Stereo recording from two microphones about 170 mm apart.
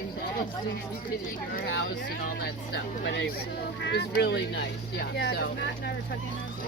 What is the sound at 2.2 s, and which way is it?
Speech, 70° left (ahead or behind).